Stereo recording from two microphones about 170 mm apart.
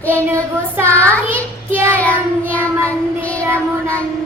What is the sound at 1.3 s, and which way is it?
Speech, 15° right (ahead or behind).